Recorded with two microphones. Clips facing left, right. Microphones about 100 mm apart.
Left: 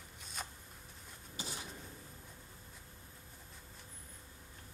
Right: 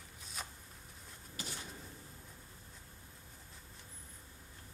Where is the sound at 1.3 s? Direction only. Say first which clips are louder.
Left 1 dB; 20° left (ahead or behind).